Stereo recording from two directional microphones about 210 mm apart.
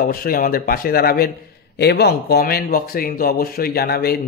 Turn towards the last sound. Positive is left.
turn(degrees=50)  # may be behind; listen again after turning